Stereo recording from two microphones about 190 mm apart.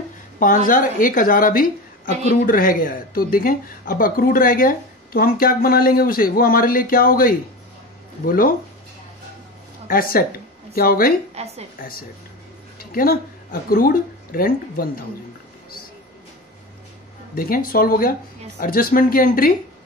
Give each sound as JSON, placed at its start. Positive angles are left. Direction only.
{"t": 0.7, "sound": "speech", "side_deg": 45}
{"t": 9.8, "sound": "speech", "side_deg": 50}
{"t": 11.4, "sound": "a woman's voice", "side_deg": -35}
{"t": 12.7, "sound": "speech", "side_deg": 50}
{"t": 17.7, "sound": "speech", "side_deg": 50}